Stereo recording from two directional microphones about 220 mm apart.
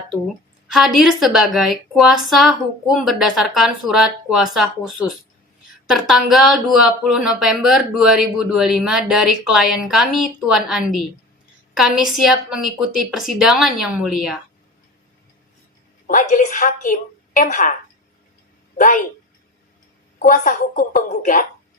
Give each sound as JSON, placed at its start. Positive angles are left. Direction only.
{"t": 0.7, "sound": "speech", "side_deg": 0}
{"t": 16.0, "sound": "a woman's voice", "side_deg": 35}
{"t": 18.8, "sound": "a woman's voice", "side_deg": 45}
{"t": 20.1, "sound": "a woman's voice", "side_deg": 35}